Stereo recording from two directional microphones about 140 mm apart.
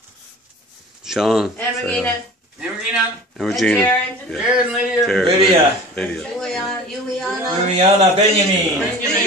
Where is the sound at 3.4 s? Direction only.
Centre (ahead or behind).